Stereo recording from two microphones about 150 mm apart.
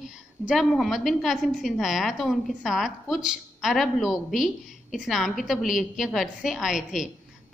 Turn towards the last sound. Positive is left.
turn(degrees=-5)  # may be behind; listen again after turning